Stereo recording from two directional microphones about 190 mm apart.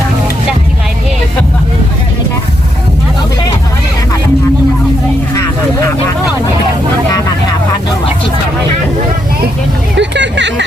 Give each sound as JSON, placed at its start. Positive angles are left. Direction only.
{"t": 9.9, "sound": "music", "side_deg": -70}